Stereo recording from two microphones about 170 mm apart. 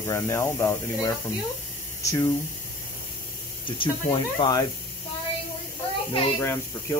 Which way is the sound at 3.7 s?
30° left (ahead or behind).